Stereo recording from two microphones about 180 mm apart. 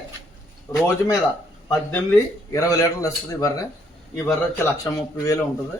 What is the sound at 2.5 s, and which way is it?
A man's voice, 20° left (ahead or behind).